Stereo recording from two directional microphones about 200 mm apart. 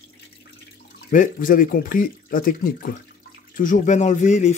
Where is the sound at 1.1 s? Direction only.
40° left (ahead or behind).